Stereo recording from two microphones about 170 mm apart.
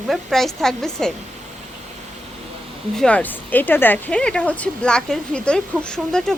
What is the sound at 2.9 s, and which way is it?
Speech, 5° left (ahead or behind).